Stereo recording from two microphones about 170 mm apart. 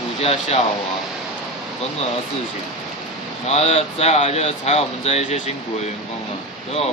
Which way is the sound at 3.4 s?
40° left (ahead or behind).